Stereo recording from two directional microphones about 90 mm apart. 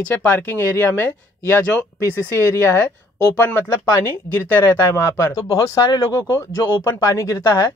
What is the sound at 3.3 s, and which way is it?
Speech, 25° left (ahead or behind).